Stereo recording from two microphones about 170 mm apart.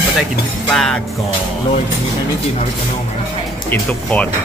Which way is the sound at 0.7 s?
5° left (ahead or behind).